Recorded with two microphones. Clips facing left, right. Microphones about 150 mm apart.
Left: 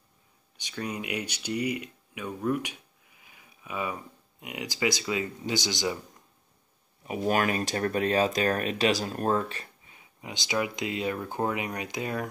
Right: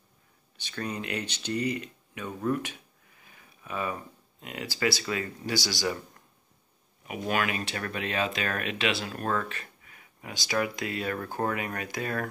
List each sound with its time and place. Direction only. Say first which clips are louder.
0.6 s speech: even; 15° left (ahead or behind)
7.1 s speech: left 3 dB; 40° left (ahead or behind); by 12.3 s 15° left (ahead or behind)